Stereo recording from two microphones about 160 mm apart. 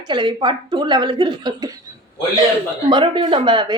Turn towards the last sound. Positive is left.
turn(degrees=-30)  # may be behind; listen again after turning